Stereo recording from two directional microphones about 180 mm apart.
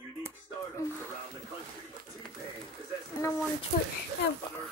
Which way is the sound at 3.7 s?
40° left (ahead or behind).